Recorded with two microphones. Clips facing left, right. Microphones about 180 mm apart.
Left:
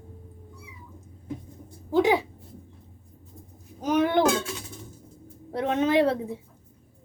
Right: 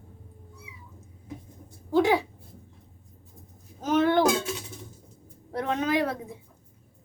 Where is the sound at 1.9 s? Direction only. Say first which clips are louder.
Left 1 dB; 15° left (ahead or behind).